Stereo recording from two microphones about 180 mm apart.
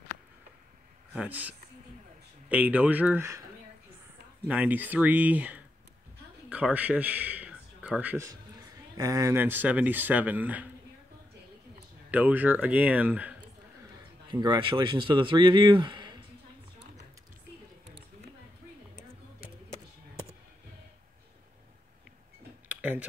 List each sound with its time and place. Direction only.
1.1 s speech: 10° right (ahead or behind)
2.5 s speech: 10° right (ahead or behind)
4.5 s a man's voice: 10° right (ahead or behind)
12.1 s speech: 10° right (ahead or behind)
14.3 s speech: 25° right (ahead or behind)
22.7 s a sound: 10° right (ahead or behind)